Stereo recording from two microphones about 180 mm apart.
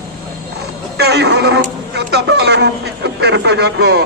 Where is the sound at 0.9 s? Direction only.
65° right (ahead or behind).